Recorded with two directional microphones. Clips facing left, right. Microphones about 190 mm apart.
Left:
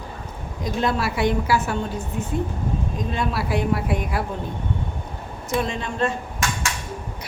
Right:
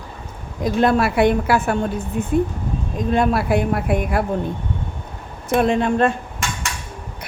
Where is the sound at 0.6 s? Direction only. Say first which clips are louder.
Right 7 dB; 55° right (ahead or behind).